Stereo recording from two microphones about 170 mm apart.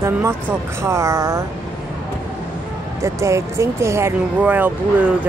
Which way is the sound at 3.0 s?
15° right (ahead or behind).